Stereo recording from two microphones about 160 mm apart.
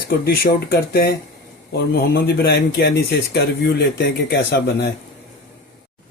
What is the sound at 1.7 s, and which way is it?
A man's voice, 90° left.